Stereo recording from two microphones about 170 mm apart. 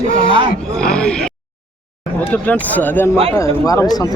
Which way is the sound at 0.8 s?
5° left (ahead or behind).